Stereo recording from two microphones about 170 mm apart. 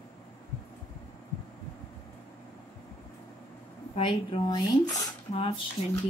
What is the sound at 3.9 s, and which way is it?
A woman's voice, 30° left (ahead or behind).